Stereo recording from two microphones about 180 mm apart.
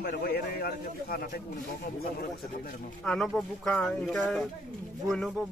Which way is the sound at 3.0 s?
Centre (ahead or behind).